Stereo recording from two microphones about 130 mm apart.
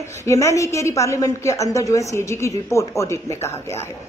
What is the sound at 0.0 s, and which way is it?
A woman's voice, 20° left (ahead or behind).